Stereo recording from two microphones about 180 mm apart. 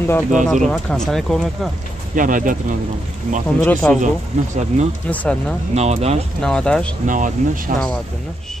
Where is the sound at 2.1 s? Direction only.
45° right (ahead or behind).